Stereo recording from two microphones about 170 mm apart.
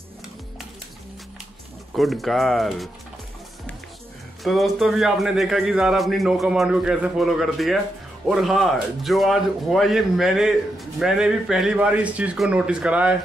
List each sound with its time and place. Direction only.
2.0 s speech: centre (ahead or behind)
4.4 s speech: centre (ahead or behind)